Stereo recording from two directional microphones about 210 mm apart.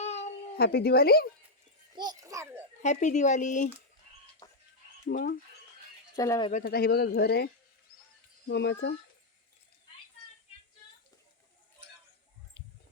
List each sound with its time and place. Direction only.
0.0 s a sound: 30° left (ahead or behind)
0.5 s speech: 45° left (ahead or behind)
2.0 s a child's voice: 15° right (ahead or behind)
2.8 s speech: 35° left (ahead or behind)
4.4 s a sound: 20° left (ahead or behind)
5.0 s speech: 40° left (ahead or behind)
6.1 s speech: 15° left (ahead or behind)
6.5 s speech: 45° left (ahead or behind)